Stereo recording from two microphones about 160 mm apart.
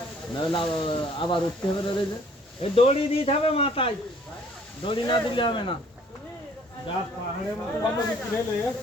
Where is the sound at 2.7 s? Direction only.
40° left (ahead or behind).